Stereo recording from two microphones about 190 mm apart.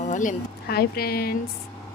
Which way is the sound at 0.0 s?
40° left (ahead or behind).